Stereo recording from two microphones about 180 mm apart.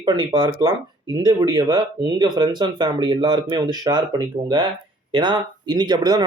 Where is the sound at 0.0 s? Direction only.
25° right (ahead or behind).